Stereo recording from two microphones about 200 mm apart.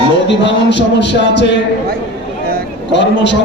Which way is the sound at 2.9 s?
60° left (ahead or behind).